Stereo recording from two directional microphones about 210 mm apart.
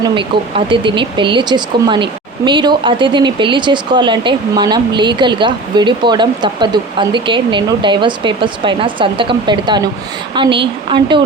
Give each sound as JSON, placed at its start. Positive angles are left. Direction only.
{"t": 0.0, "sound": "speech", "side_deg": -25}